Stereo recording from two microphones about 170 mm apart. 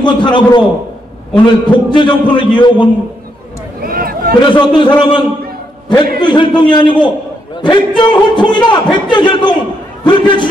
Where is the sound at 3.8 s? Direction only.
60° right (ahead or behind).